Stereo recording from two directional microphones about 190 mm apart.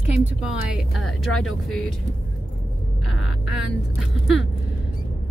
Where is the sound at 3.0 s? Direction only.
Centre (ahead or behind).